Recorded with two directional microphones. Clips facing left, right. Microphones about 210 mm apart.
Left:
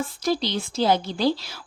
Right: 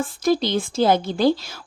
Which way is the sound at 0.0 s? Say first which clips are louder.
Right 4 dB; 50° right (ahead or behind).